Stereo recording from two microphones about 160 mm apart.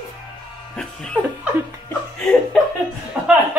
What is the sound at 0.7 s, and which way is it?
Music, 5° left (ahead or behind).